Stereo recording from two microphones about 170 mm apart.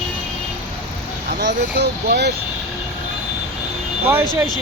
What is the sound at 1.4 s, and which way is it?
Speech, 80° right.